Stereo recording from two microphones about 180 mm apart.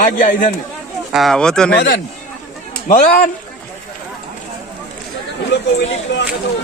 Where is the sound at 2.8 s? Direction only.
55° left (ahead or behind).